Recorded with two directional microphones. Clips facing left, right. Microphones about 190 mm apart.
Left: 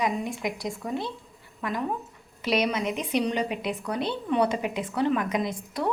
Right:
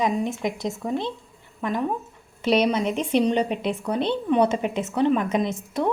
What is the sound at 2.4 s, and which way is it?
A woman's voice, 30° right (ahead or behind).